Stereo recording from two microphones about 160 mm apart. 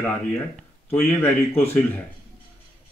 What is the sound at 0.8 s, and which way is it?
Speech, 15° left (ahead or behind).